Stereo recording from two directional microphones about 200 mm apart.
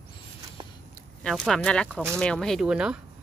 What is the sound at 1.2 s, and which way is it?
Speech, 5° left (ahead or behind).